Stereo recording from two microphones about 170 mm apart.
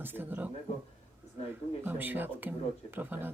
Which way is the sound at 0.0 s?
10° right (ahead or behind).